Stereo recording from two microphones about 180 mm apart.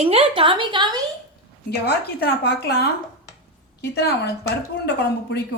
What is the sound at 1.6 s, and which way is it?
A woman's voice, 65° left (ahead or behind).